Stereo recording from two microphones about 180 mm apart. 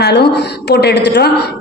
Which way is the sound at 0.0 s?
65° left (ahead or behind).